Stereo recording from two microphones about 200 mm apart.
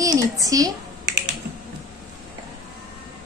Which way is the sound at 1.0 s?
60° right (ahead or behind).